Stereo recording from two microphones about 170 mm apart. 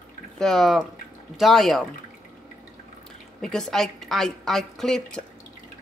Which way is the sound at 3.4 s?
5° left (ahead or behind).